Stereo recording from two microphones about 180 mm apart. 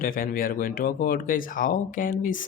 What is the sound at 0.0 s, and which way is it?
Speech, 50° left (ahead or behind).